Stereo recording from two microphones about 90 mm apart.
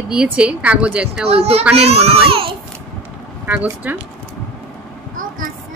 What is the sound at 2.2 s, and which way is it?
Speech, 90° right.